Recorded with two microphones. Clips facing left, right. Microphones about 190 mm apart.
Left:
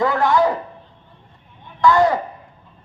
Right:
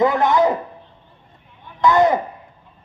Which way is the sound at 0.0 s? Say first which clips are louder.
Right 1 dB; 20° right (ahead or behind).